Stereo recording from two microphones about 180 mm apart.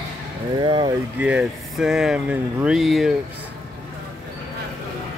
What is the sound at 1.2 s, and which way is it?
Speech, 5° right (ahead or behind).